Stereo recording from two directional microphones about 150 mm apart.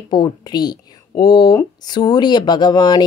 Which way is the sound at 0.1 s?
25° left (ahead or behind).